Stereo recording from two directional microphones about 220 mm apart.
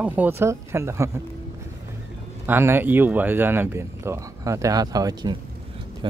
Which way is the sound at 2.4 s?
10° right (ahead or behind).